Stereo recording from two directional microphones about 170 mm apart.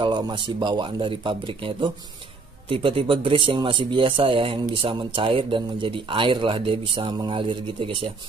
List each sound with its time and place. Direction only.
0.0 s speech: 25° right (ahead or behind)